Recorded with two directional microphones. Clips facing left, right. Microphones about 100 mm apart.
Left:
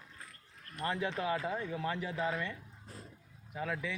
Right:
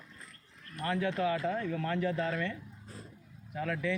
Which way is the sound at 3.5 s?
5° left (ahead or behind).